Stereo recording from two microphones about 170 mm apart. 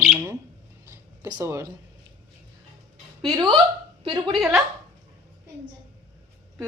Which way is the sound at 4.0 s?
30° right (ahead or behind).